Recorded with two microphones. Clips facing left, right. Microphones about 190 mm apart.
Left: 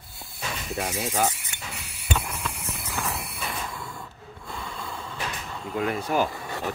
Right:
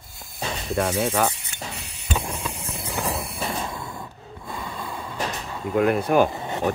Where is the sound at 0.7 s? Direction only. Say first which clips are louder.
Right 7 dB; 65° right (ahead or behind).